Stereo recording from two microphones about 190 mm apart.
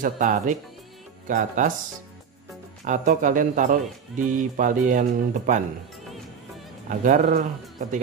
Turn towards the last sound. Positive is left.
turn(degrees=-45)  # may be behind; listen again after turning